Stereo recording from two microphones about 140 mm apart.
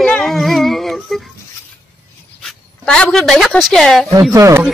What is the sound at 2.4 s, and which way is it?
Speech, 5° left (ahead or behind).